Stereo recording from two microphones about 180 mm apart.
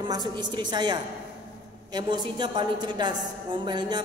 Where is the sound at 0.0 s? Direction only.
25° right (ahead or behind).